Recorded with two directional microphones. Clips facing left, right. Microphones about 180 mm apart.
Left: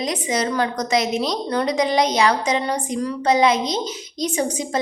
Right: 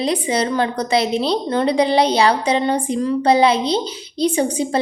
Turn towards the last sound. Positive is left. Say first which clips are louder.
# right 4 dB
turn(degrees=-30)  # may be behind; listen again after turning